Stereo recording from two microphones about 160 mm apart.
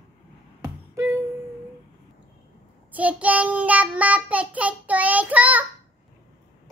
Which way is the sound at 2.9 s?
10° right (ahead or behind).